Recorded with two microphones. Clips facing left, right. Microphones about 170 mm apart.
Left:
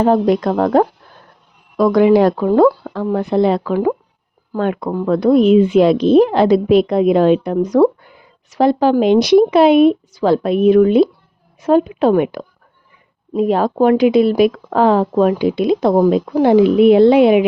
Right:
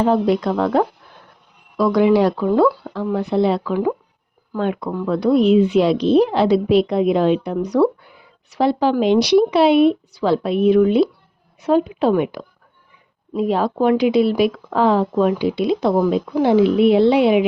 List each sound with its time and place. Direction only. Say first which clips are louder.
0.0 s speech: left 3 dB; 50° left (ahead or behind)